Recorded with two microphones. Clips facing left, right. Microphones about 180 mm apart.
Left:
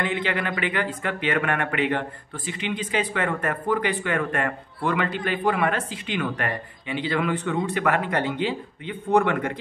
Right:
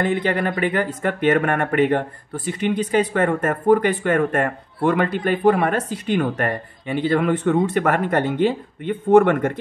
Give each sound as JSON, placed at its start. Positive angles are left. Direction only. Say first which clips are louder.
{"t": 0.0, "sound": "speech", "louder": "right 6 dB", "side_deg": -45}